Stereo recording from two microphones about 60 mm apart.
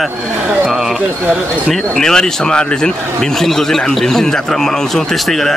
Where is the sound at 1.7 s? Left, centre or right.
Centre.